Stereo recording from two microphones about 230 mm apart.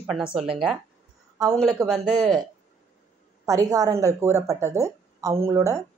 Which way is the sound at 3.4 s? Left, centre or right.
Centre.